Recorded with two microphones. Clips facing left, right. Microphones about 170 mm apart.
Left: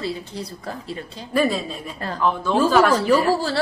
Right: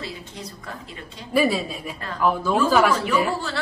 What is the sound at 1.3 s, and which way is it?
A woman's voice, 5° right (ahead or behind).